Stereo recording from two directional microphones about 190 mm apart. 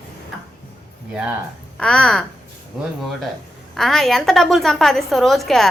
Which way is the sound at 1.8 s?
5° left (ahead or behind).